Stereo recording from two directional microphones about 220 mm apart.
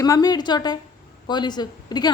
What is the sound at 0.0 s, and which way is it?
A woman's voice, 15° left (ahead or behind).